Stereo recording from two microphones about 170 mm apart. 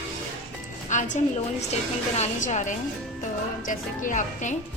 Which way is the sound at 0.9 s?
45° left (ahead or behind).